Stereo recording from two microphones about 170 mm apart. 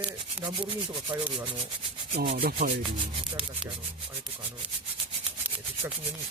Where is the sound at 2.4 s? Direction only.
55° right (ahead or behind).